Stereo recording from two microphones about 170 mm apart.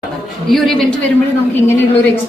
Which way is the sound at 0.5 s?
Centre (ahead or behind).